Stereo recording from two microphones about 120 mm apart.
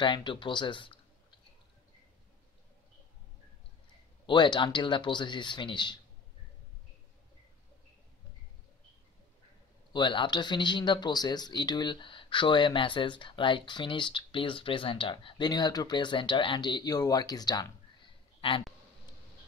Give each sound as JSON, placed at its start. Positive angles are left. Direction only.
{"t": 0.0, "sound": "speech", "side_deg": 40}
{"t": 4.3, "sound": "speech", "side_deg": 40}
{"t": 9.9, "sound": "speech", "side_deg": 40}
{"t": 18.4, "sound": "a sound", "side_deg": 45}